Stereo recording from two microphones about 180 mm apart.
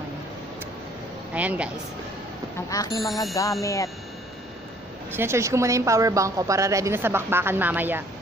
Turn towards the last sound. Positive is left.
turn(degrees=-10)  # may be behind; listen again after turning